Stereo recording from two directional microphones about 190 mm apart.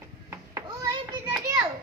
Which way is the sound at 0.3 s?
15° right (ahead or behind).